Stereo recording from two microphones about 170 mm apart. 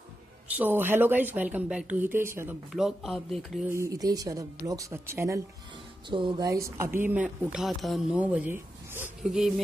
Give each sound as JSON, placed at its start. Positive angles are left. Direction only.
{"t": 0.6, "sound": "speech", "side_deg": -10}
{"t": 2.7, "sound": "speech", "side_deg": 0}
{"t": 3.7, "sound": "speech", "side_deg": -20}
{"t": 6.0, "sound": "speech", "side_deg": -30}